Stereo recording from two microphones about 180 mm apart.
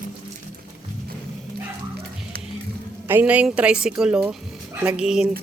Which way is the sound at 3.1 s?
10° right (ahead or behind).